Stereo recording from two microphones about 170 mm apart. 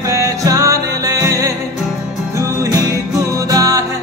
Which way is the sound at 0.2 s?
20° right (ahead or behind).